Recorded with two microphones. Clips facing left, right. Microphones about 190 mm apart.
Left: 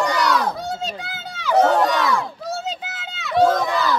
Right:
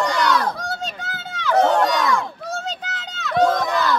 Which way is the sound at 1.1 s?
5° left (ahead or behind).